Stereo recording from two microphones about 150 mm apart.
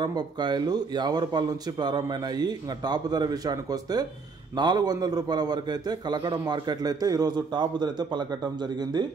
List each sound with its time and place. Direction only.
0.0 s a man's voice: 30° right (ahead or behind)